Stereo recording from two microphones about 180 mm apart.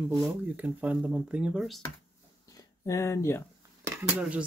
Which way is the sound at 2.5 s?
20° left (ahead or behind).